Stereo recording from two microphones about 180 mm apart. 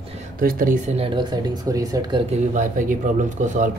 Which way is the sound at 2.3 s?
45° right (ahead or behind).